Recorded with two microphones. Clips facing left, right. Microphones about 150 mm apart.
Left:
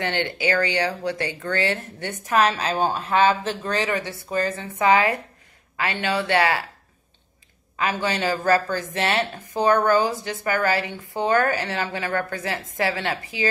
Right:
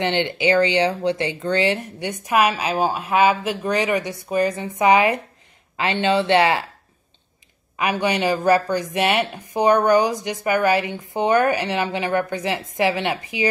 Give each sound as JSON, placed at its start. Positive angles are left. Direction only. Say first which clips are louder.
{"t": 0.0, "sound": "speech", "louder": "right 4 dB", "side_deg": -20}
{"t": 7.7, "sound": "speech", "louder": "right 3 dB", "side_deg": -15}